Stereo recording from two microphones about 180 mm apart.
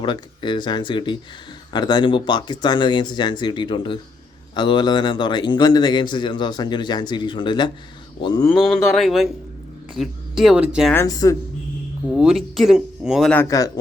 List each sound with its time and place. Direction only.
0.0 s a man's voice: 25° left (ahead or behind)
8.4 s a woman's voice: 5° left (ahead or behind)
10.9 s speech: 15° left (ahead or behind)
12.1 s speech: centre (ahead or behind)
13.3 s speech: 15° left (ahead or behind)